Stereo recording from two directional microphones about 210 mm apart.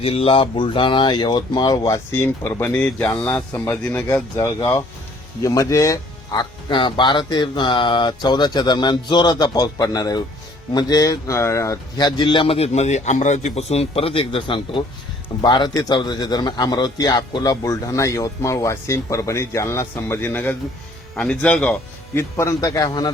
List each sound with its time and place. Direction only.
0.0 s speech: 25° left (ahead or behind)